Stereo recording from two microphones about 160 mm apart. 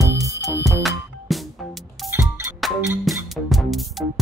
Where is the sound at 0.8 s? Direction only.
Centre (ahead or behind).